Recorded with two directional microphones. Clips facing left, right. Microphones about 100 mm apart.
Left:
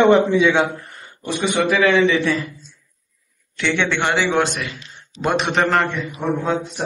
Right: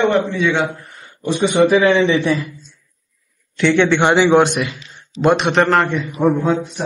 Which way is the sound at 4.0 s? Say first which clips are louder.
Right 5 dB; 20° right (ahead or behind).